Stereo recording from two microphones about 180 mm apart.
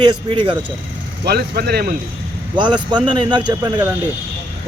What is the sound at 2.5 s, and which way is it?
Speech, 25° right (ahead or behind).